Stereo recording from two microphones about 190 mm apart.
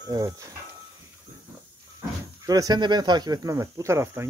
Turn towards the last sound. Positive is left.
turn(degrees=-15)  # may be behind; listen again after turning